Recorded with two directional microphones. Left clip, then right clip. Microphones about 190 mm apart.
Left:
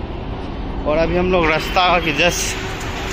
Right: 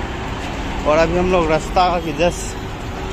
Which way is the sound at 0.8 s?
Centre (ahead or behind).